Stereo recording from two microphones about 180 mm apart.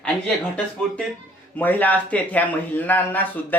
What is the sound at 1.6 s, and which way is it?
A man's voice, 10° left (ahead or behind).